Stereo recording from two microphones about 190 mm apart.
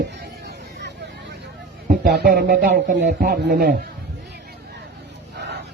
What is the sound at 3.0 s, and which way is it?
Speech, 55° right (ahead or behind).